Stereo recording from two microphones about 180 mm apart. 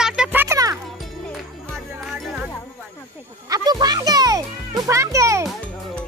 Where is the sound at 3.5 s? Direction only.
20° right (ahead or behind).